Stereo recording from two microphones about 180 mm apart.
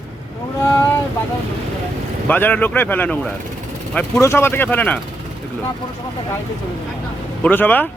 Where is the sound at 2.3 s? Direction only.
10° left (ahead or behind).